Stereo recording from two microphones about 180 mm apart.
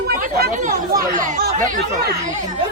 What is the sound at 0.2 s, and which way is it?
Speech, 55° right (ahead or behind).